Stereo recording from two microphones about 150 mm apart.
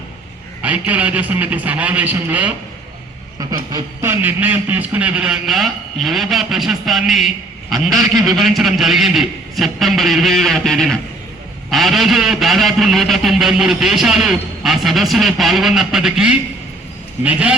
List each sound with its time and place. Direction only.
0.6 s speech: 10° right (ahead or behind)
3.3 s a sound: 25° right (ahead or behind)
4.1 s speech: 10° right (ahead or behind)